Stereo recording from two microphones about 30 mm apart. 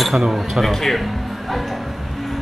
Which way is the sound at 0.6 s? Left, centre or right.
Centre.